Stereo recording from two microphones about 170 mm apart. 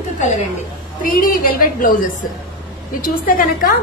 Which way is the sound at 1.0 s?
55° left (ahead or behind).